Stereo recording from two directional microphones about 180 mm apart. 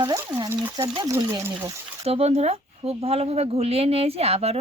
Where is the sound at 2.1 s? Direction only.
35° right (ahead or behind).